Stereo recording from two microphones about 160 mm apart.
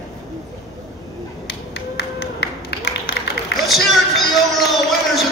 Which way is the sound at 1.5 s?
85° left.